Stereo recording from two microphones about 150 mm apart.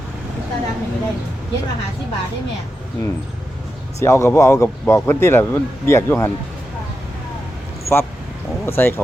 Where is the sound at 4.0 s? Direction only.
20° left (ahead or behind).